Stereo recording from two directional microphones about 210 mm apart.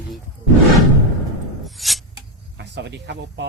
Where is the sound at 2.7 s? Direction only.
55° right (ahead or behind).